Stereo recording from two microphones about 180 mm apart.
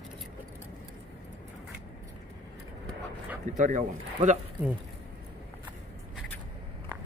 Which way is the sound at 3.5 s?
45° right (ahead or behind).